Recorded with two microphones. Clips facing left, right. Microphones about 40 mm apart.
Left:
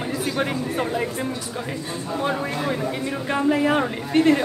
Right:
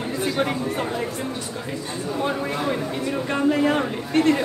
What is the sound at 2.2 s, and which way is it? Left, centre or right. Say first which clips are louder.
Speech: even; centre.